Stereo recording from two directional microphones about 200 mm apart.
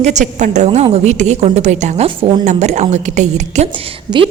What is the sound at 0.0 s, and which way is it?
A woman's voice, 35° right (ahead or behind).